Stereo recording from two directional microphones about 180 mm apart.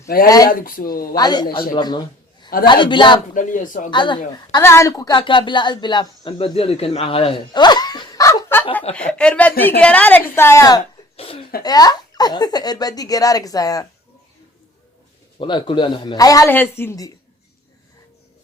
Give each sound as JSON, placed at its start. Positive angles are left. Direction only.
{"t": 0.3, "sound": "speech", "side_deg": 20}
{"t": 0.6, "sound": "speech", "side_deg": 50}
{"t": 1.1, "sound": "speech", "side_deg": 20}
{"t": 3.3, "sound": "speech", "side_deg": 45}
{"t": 3.9, "sound": "speech", "side_deg": 25}
{"t": 4.5, "sound": "a woman's voice", "side_deg": 15}
{"t": 11.2, "sound": "speech", "side_deg": 30}
{"t": 11.6, "sound": "speech", "side_deg": 20}
{"t": 15.4, "sound": "speech", "side_deg": 25}